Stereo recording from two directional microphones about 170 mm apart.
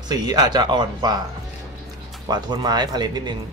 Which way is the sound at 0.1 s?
25° right (ahead or behind).